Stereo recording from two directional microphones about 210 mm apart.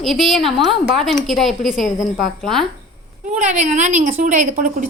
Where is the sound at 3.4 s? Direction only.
35° right (ahead or behind).